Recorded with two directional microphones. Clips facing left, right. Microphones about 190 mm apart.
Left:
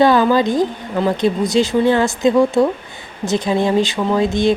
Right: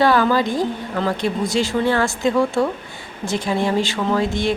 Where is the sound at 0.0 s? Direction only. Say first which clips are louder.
Left 4 dB; 20° left (ahead or behind).